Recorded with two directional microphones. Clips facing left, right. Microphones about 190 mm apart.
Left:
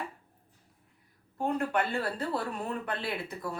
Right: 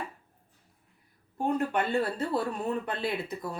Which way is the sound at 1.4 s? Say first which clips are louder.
Right 1 dB; 20° right (ahead or behind).